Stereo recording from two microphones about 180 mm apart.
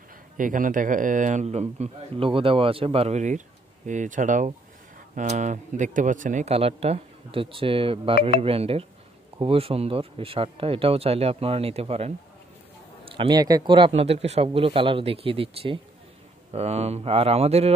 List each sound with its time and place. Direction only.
0.4 s a man's voice: 50° right (ahead or behind)